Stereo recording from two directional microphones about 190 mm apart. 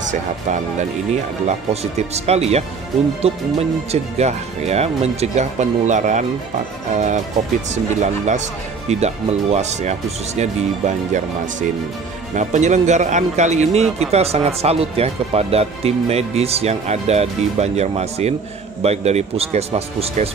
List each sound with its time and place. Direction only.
0.1 s speech: 40° right (ahead or behind)